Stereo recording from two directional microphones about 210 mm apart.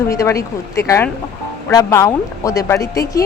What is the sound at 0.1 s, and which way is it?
Speech, 15° left (ahead or behind).